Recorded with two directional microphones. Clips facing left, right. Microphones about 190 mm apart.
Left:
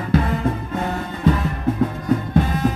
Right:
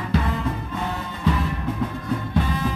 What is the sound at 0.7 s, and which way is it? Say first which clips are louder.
Music: left 4 dB; 50° left (ahead or behind).